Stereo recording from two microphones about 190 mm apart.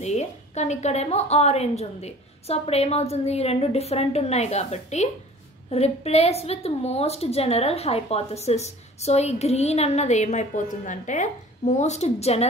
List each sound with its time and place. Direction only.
0.0 s a woman's voice: 35° left (ahead or behind)